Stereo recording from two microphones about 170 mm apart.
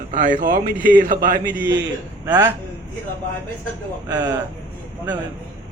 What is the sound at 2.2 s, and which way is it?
Speech, 20° right (ahead or behind).